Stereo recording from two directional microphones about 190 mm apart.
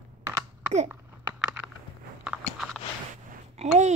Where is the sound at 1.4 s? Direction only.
10° right (ahead or behind).